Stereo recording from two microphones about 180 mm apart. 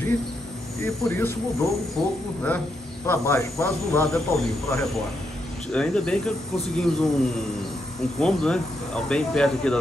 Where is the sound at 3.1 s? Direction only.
15° left (ahead or behind).